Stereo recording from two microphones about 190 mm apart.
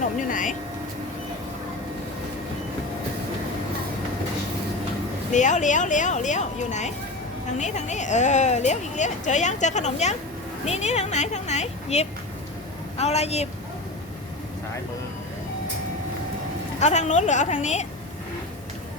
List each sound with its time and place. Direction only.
0.3 s vehicle: 45° left (ahead or behind)
5.3 s a woman's voice: 40° left (ahead or behind)
16.8 s a woman's voice: 40° left (ahead or behind)